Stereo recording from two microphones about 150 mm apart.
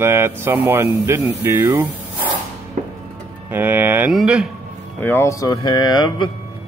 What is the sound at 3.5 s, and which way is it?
Speech, 15° right (ahead or behind).